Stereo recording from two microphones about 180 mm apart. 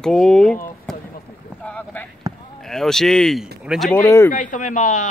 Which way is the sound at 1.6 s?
5° left (ahead or behind).